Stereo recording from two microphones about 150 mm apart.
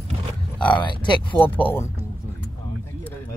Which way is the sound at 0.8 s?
30° left (ahead or behind).